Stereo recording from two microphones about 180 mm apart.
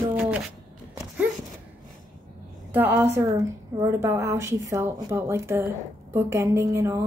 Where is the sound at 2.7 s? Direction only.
10° right (ahead or behind).